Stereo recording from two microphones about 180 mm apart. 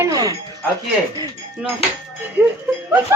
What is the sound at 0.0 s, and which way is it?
Music, 20° right (ahead or behind).